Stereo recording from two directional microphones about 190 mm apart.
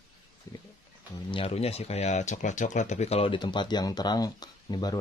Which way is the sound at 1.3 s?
35° left (ahead or behind).